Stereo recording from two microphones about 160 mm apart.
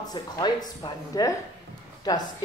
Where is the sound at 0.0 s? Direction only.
25° left (ahead or behind).